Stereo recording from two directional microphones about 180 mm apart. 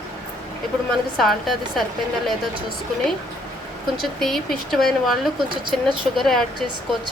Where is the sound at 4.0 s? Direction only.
Centre (ahead or behind).